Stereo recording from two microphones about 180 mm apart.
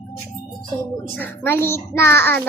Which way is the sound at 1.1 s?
10° left (ahead or behind).